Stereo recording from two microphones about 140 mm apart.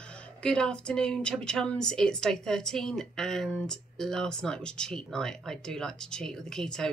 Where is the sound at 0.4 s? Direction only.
5° left (ahead or behind).